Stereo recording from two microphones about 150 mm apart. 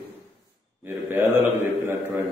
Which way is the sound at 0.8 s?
15° right (ahead or behind).